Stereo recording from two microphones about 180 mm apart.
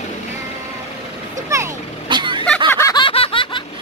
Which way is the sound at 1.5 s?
20° right (ahead or behind).